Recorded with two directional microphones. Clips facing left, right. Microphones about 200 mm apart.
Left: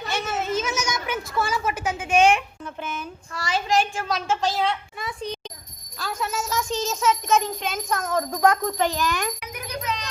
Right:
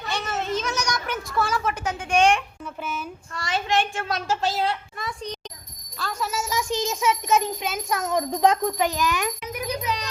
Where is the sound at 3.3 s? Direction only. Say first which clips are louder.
Left 1 dB; centre (ahead or behind).